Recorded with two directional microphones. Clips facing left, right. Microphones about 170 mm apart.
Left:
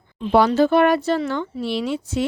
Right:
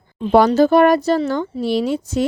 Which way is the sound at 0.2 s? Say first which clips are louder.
Right 3 dB; 45° right (ahead or behind).